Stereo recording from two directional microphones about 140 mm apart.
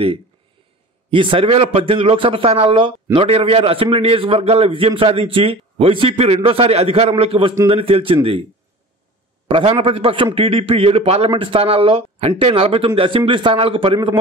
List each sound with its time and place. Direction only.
1.1 s a man's voice: 40° right (ahead or behind)
9.5 s a man's voice: 40° right (ahead or behind)